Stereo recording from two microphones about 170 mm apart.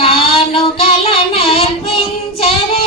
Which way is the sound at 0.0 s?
35° left (ahead or behind).